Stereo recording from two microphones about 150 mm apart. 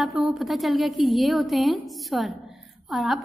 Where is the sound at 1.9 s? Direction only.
Centre (ahead or behind).